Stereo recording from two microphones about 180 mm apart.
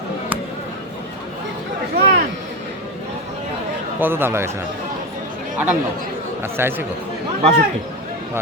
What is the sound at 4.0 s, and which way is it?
Speech, 10° right (ahead or behind).